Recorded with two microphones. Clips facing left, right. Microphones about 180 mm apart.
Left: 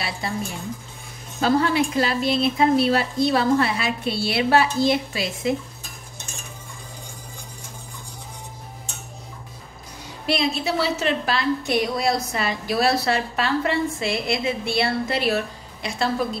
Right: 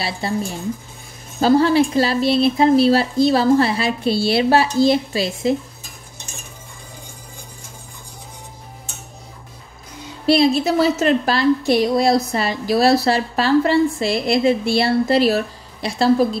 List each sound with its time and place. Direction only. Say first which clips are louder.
0.2 s a woman's voice: right 6 dB; 30° right (ahead or behind)
1.4 s a woman's voice: right 6 dB; 35° right (ahead or behind)
10.2 s a woman's voice: right 8 dB; 35° right (ahead or behind)